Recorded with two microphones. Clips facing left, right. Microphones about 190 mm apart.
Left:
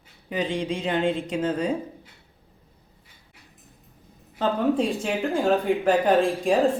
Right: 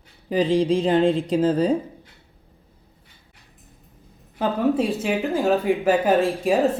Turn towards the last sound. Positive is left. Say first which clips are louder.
# right 1 dB
turn(degrees=-5)  # may be behind; listen again after turning